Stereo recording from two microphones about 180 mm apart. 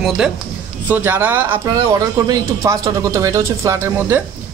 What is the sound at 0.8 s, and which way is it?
Speech, 10° right (ahead or behind).